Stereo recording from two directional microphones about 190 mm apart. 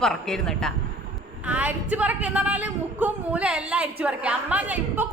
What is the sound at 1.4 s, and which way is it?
A woman's voice, 5° right (ahead or behind).